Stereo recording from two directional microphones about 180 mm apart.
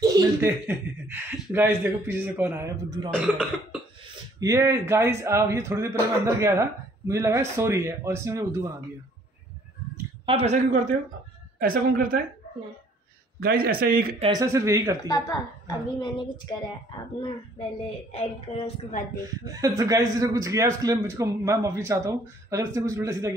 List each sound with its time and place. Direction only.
0.0 s a man's voice: 15° right (ahead or behind)
4.4 s a man's voice: 15° right (ahead or behind)
10.2 s a woman's voice: 35° right (ahead or behind)
13.4 s a man's voice: 55° right (ahead or behind)
14.2 s a man's voice: 20° right (ahead or behind)
15.0 s a woman's voice: 20° left (ahead or behind)
18.1 s a woman's voice: 40° left (ahead or behind)
19.4 s a man's voice: 20° right (ahead or behind)